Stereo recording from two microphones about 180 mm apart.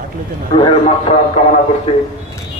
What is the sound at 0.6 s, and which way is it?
Speech, 30° left (ahead or behind).